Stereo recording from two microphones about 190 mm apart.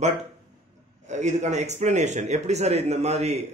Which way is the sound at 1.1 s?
40° right (ahead or behind).